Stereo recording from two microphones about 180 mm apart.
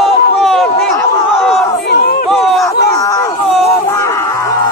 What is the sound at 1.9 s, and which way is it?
Crowd, 60° left (ahead or behind).